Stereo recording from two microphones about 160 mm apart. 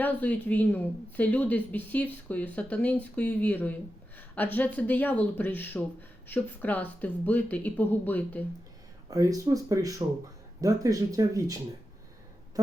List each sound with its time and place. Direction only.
0.0 s speech: 10° left (ahead or behind)
9.0 s speech: 20° right (ahead or behind)
12.6 s a sound: 20° right (ahead or behind)